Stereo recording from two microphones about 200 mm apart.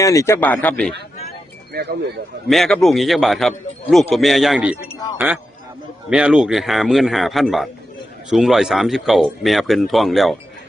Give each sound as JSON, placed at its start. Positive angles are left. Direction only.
{"t": 0.0, "sound": "a man's voice", "side_deg": 15}
{"t": 1.7, "sound": "speech", "side_deg": -50}
{"t": 2.5, "sound": "speech", "side_deg": 0}